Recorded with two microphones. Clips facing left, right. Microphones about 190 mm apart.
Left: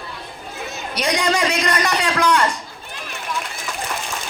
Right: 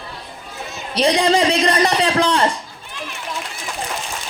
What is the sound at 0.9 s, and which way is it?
A woman's voice, 30° right (ahead or behind).